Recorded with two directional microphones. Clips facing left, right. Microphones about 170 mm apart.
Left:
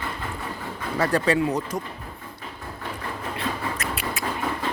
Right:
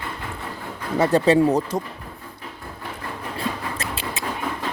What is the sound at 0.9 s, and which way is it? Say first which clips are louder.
Speech: right 5 dB; 25° right (ahead or behind).